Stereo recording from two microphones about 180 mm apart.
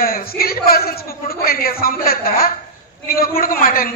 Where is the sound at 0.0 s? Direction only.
55° left (ahead or behind).